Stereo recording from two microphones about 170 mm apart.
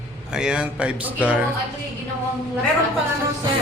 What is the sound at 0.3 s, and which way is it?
Speech, 5° right (ahead or behind).